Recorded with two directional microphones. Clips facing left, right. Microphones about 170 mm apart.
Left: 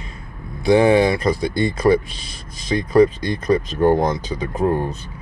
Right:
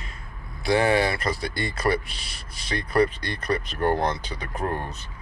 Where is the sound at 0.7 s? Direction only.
15° left (ahead or behind).